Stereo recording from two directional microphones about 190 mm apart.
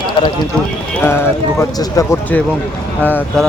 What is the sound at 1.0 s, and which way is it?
Speech, 10° left (ahead or behind).